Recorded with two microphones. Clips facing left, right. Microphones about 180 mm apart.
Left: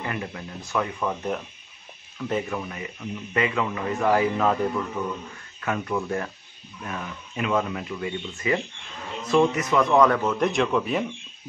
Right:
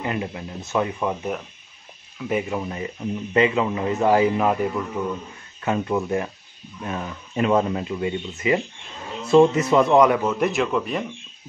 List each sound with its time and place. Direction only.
0.0 s speech: 20° right (ahead or behind)
2.1 s speech: 10° right (ahead or behind)
2.5 s speech: 25° right (ahead or behind); by 5.0 s 10° right (ahead or behind)
5.6 s speech: 25° right (ahead or behind)
6.8 s speech: 30° right (ahead or behind)
9.9 s speech: 15° right (ahead or behind)